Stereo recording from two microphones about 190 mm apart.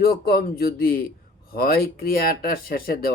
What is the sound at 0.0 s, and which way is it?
Speech, 55° left (ahead or behind).